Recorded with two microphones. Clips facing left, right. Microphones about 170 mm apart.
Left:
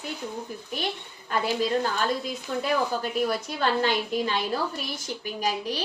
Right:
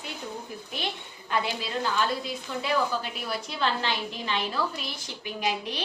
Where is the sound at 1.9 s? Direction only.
45° left (ahead or behind).